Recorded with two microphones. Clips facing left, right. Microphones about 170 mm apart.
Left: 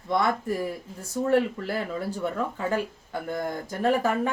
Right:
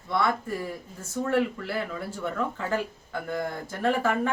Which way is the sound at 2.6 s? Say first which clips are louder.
Left 2 dB; 15° left (ahead or behind).